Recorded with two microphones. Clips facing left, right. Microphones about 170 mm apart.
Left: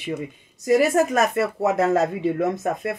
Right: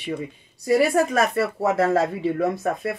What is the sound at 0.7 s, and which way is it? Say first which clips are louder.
Speech: left 1 dB; 20° left (ahead or behind).